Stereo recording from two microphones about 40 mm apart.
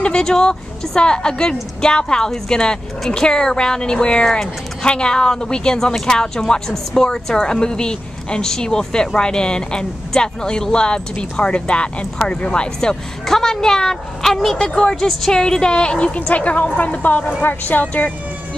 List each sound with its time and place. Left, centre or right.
0.0 s a woman's voice: centre
13.3 s a woman's voice: centre
14.6 s a woman's voice: left
16.2 s a woman's voice: left